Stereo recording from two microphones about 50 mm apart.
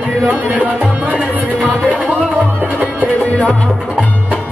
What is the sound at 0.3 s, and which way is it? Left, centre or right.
Music, right.